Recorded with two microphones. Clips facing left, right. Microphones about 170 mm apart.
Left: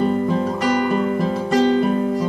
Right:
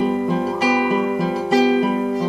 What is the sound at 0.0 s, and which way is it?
Music, 10° right (ahead or behind).